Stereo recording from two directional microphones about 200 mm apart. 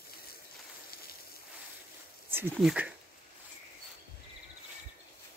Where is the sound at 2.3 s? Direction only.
5° right (ahead or behind).